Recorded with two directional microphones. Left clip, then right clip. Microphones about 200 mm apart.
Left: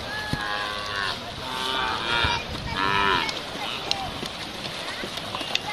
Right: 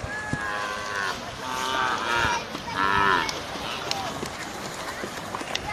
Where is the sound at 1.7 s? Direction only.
5° right (ahead or behind).